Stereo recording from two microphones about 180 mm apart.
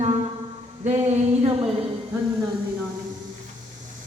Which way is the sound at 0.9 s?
40° right (ahead or behind).